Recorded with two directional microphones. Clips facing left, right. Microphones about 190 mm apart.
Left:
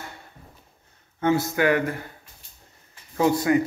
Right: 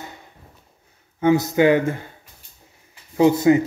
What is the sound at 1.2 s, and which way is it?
A man's voice, 15° right (ahead or behind).